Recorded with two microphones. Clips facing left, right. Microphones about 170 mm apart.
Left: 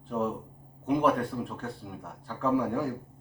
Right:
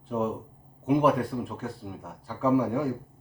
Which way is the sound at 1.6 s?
5° right (ahead or behind).